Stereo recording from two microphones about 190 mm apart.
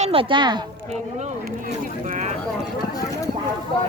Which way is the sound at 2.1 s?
40° right (ahead or behind).